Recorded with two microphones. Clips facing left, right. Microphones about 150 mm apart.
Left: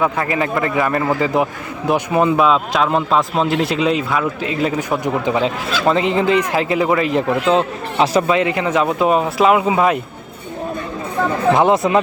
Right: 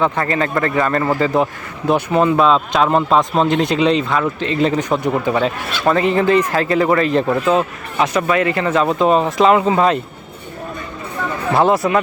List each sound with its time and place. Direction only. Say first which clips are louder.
0.0 s speech: right 1 dB; 10° left (ahead or behind)
2.4 s speech: right 1 dB; centre (ahead or behind)
7.5 s a man's voice: left 1 dB; 30° left (ahead or behind)
8.4 s speech: right 1 dB; 15° left (ahead or behind)
11.5 s a man's voice: right 2 dB; 20° left (ahead or behind)